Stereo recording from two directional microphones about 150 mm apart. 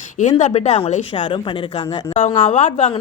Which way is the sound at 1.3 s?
30° left (ahead or behind).